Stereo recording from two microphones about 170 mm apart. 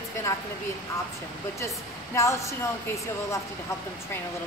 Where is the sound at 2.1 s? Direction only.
15° left (ahead or behind).